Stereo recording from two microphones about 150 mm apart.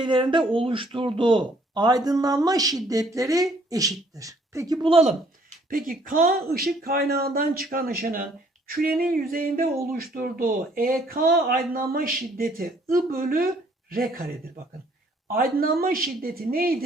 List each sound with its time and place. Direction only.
0.0 s speech: 30° right (ahead or behind)
4.9 s speech: 45° right (ahead or behind)
5.7 s speech: 70° right (ahead or behind)
15.3 s speech: 85° right